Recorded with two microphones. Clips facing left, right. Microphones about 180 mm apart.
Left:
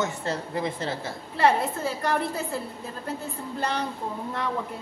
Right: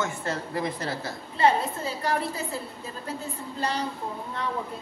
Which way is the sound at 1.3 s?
70° left (ahead or behind).